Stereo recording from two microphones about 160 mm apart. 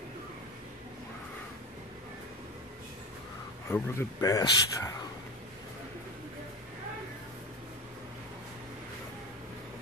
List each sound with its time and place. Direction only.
3.7 s speech: 15° left (ahead or behind)